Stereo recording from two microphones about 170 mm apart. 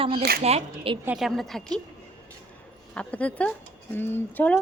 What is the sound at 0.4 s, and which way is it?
Speech, 40° right (ahead or behind).